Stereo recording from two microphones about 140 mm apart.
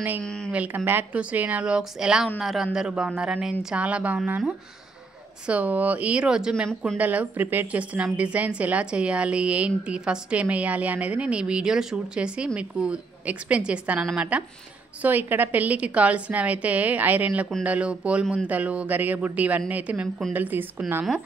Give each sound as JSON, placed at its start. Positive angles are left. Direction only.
{"t": 0.2, "sound": "speech", "side_deg": 5}
{"t": 0.5, "sound": "a woman's voice", "side_deg": -10}